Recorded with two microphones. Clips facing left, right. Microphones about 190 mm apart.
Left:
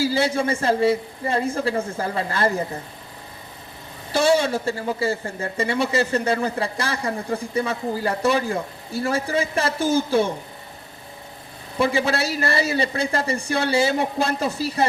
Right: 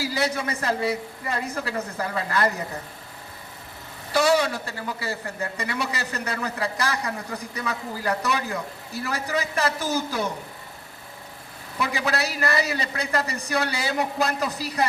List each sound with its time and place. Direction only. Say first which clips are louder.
0.0 s speech: left 5 dB; 30° left (ahead or behind)
4.1 s speech: left 2 dB; 25° left (ahead or behind)
11.8 s speech: left 5 dB; 30° left (ahead or behind)